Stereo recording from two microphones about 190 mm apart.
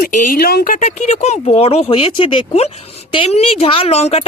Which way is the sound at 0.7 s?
40° left (ahead or behind).